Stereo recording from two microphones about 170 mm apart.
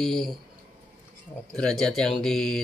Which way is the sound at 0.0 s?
5° left (ahead or behind).